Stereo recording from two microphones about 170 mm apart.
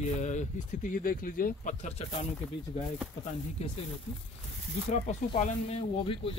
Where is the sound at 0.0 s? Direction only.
45° left (ahead or behind).